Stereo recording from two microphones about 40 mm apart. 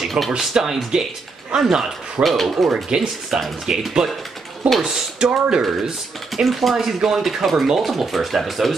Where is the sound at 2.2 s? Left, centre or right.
Centre.